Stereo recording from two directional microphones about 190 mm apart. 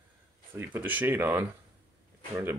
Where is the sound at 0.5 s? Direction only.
10° right (ahead or behind).